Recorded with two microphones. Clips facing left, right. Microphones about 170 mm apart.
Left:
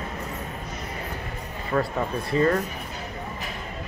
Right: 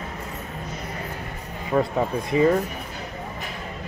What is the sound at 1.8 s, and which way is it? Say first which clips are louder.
Speech: right 4 dB; 15° right (ahead or behind).